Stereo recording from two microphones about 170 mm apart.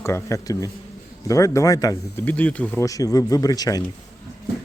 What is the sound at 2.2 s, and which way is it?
Speech, 10° left (ahead or behind).